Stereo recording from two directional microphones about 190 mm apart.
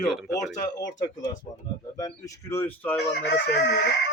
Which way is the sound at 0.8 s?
20° left (ahead or behind).